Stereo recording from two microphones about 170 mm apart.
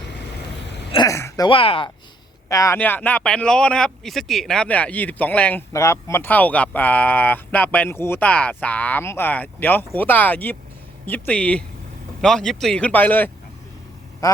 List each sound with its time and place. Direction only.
0.9 s a sound: 20° left (ahead or behind)
1.5 s speech: 30° left (ahead or behind)
2.5 s speech: 20° left (ahead or behind)